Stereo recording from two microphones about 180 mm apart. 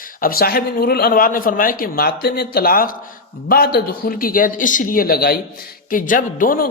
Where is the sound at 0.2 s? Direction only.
55° left (ahead or behind).